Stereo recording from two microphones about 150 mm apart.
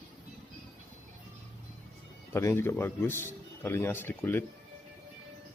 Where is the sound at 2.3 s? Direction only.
15° left (ahead or behind).